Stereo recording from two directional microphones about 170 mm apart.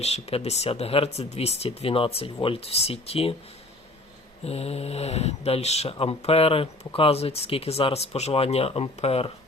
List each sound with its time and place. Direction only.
0.0 s speech: 35° left (ahead or behind)
4.4 s speech: 35° left (ahead or behind)